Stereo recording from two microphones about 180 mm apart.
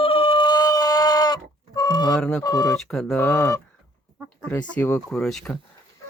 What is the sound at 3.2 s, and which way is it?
Speech, 15° left (ahead or behind).